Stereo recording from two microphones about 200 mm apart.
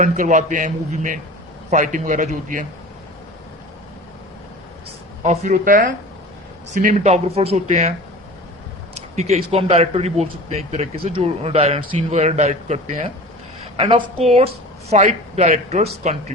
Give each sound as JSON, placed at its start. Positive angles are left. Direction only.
{"t": 0.0, "sound": "a man's voice", "side_deg": -40}
{"t": 5.2, "sound": "a man's voice", "side_deg": -35}
{"t": 9.0, "sound": "a man's voice", "side_deg": -30}